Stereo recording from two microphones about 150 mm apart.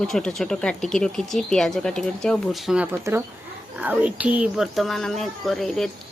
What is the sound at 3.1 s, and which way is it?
Speech, 15° right (ahead or behind).